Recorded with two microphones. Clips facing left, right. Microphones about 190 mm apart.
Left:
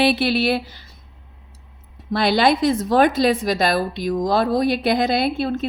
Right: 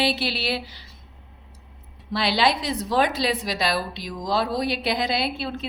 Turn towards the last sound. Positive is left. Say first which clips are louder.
# left 7 dB
turn(degrees=50)  # may be behind; listen again after turning